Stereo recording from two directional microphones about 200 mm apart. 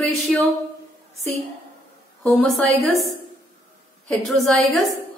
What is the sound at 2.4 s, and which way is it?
Speech, centre (ahead or behind).